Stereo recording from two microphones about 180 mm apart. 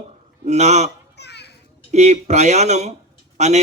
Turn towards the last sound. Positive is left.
turn(degrees=-40)  # may be behind; listen again after turning